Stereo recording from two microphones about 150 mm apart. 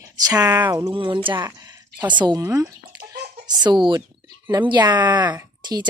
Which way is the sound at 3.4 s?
30° right (ahead or behind).